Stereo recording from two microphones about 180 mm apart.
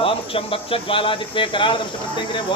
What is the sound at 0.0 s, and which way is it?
Speech, 30° left (ahead or behind).